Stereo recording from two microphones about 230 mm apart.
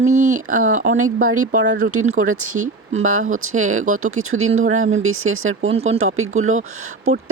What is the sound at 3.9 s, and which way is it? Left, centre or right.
Speech, right.